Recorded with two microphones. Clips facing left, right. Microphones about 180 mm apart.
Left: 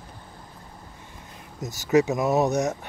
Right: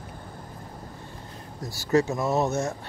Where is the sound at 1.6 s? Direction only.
20° left (ahead or behind).